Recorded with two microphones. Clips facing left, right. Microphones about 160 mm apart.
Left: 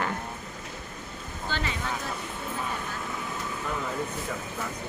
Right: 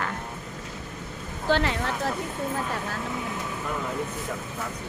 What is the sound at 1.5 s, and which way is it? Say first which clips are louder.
Speech: right 8 dB; 80° right.